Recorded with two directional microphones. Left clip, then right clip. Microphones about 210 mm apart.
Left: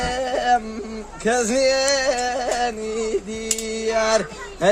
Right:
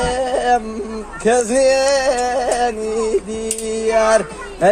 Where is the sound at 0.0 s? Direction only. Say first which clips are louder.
Right 5 dB; 35° left (ahead or behind).